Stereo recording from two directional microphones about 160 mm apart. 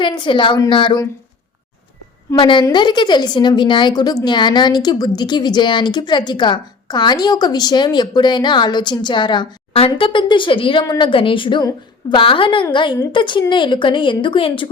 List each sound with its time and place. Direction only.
0.0 s a woman's voice: 30° left (ahead or behind)
2.4 s a woman's voice: 30° left (ahead or behind)